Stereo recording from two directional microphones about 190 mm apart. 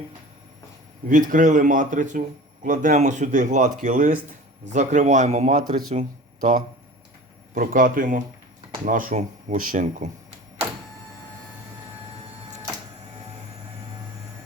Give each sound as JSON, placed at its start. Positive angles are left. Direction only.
{"t": 1.3, "sound": "speech", "side_deg": -45}